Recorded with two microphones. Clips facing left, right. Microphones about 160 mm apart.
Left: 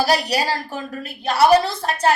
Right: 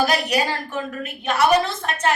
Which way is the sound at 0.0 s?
35° left (ahead or behind).